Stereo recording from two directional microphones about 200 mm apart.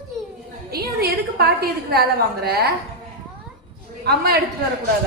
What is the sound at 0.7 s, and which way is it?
A woman's voice, 50° right (ahead or behind).